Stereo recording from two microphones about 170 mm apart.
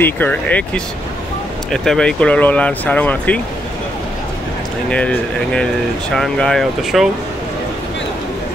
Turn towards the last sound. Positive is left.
turn(degrees=0)  # may be behind; listen again after turning